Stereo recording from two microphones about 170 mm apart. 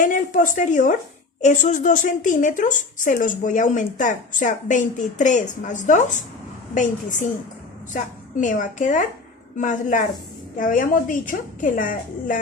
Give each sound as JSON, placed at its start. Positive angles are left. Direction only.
{"t": 0.0, "sound": "a woman's voice", "side_deg": 50}